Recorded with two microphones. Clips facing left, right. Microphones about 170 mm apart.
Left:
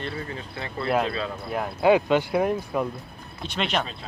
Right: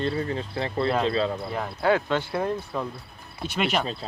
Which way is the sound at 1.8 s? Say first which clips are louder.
Left 4 dB; 15° left (ahead or behind).